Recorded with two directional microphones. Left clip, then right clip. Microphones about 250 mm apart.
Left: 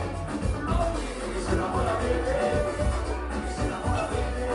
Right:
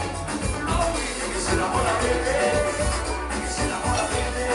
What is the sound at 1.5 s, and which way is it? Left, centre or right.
Music, centre.